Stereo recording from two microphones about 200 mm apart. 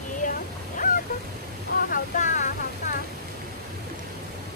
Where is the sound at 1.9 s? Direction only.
40° left (ahead or behind).